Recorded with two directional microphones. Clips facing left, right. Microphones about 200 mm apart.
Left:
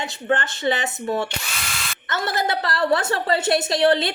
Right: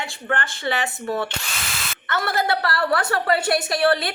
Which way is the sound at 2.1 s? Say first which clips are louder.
Right 1 dB; 20° left (ahead or behind).